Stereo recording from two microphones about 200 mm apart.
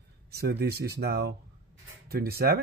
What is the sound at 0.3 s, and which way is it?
Speech, 50° right (ahead or behind).